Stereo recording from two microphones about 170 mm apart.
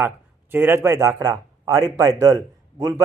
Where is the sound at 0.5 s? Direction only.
10° right (ahead or behind).